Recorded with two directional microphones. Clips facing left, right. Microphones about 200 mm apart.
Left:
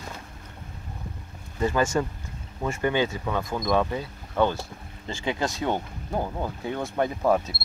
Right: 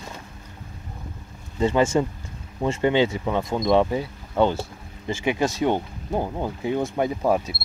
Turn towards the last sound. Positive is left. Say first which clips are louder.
# right 1 dB
turn(degrees=-10)  # may be behind; listen again after turning